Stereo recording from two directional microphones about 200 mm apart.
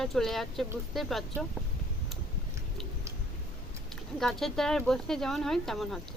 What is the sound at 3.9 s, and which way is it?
Speech, centre (ahead or behind).